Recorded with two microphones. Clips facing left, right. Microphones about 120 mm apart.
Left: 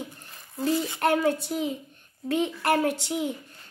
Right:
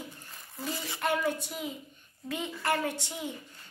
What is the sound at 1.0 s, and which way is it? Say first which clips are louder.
A woman's voice: left 5 dB; 70° left (ahead or behind).